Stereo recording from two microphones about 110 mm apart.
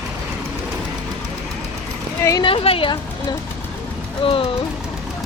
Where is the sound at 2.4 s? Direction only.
55° left (ahead or behind).